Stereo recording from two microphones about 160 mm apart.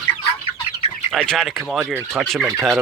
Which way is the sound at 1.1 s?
5° left (ahead or behind).